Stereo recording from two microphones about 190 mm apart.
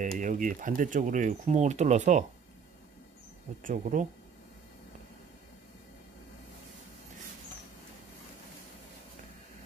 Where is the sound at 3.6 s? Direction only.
40° right (ahead or behind).